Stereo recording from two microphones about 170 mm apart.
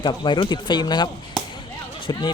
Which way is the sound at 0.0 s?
25° left (ahead or behind).